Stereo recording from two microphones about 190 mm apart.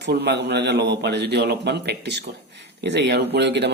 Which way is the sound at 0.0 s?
65° right (ahead or behind).